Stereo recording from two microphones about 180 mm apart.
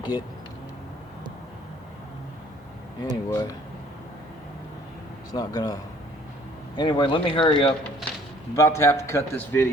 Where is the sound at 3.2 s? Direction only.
20° left (ahead or behind).